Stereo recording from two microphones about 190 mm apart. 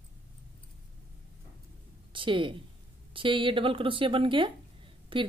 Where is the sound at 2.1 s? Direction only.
25° right (ahead or behind).